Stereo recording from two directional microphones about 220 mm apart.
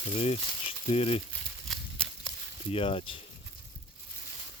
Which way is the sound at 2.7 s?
25° left (ahead or behind).